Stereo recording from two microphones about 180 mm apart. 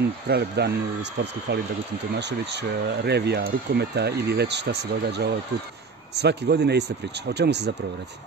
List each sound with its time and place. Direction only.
0.3 s speech: 65° right (ahead or behind)